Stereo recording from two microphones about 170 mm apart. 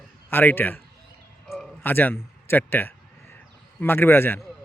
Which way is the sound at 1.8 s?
10° left (ahead or behind).